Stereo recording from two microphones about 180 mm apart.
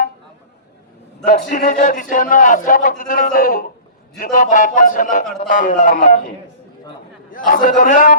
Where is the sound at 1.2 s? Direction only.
50° left (ahead or behind).